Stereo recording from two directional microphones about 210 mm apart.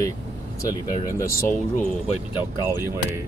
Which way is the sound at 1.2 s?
15° left (ahead or behind).